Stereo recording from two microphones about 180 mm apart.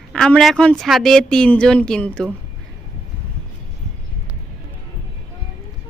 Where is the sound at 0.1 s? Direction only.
5° left (ahead or behind).